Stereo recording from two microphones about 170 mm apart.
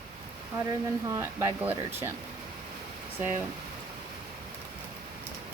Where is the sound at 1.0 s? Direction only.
15° right (ahead or behind).